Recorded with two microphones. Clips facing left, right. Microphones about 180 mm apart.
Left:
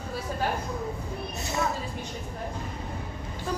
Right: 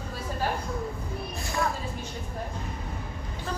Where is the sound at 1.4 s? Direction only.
20° left (ahead or behind).